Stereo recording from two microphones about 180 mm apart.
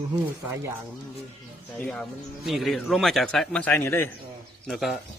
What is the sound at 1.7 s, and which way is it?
A man's voice, 5° left (ahead or behind).